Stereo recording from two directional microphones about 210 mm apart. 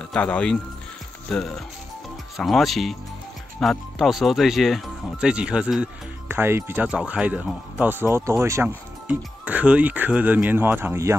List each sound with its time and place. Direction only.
0.1 s speech: 5° left (ahead or behind); by 11.1 s 10° right (ahead or behind)